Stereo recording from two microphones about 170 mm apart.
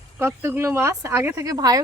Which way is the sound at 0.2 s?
15° right (ahead or behind).